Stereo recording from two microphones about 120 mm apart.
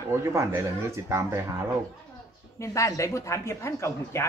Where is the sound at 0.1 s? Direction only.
25° right (ahead or behind).